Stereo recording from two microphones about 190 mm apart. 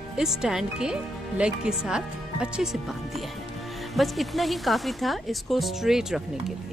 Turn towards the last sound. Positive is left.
turn(degrees=0)  # may be behind; listen again after turning